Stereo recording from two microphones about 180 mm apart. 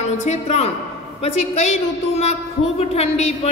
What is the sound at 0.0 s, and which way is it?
A woman's voice, 40° left (ahead or behind).